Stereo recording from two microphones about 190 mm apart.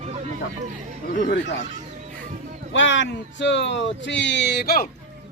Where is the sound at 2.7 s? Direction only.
80° left; by 4.9 s 55° left (ahead or behind).